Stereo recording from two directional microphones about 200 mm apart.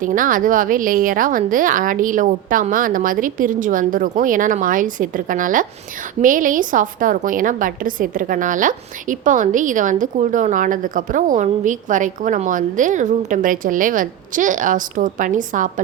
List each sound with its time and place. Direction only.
0.0 s a woman's voice: 40° right (ahead or behind)